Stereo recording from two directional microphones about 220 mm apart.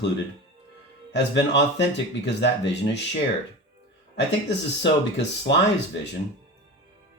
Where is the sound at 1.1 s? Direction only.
50° left (ahead or behind).